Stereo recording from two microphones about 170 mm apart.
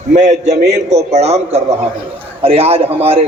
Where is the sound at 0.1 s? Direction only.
45° right (ahead or behind).